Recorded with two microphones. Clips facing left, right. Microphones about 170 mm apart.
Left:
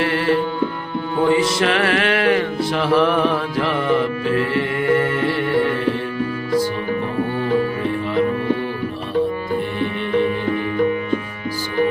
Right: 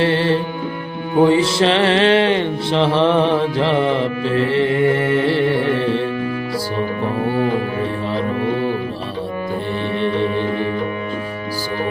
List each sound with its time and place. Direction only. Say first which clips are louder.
0.0 s music: right 2 dB; 30° right (ahead or behind)
10.0 s music: even; 30° right (ahead or behind)